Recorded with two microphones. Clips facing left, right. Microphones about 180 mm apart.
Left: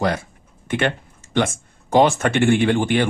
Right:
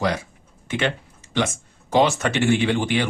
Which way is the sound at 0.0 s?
50° left (ahead or behind).